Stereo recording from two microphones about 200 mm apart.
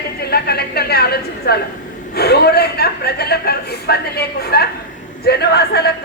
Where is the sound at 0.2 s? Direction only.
50° left (ahead or behind).